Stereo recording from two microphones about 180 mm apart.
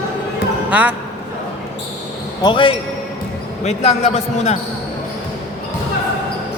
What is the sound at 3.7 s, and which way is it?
Speech, 35° left (ahead or behind).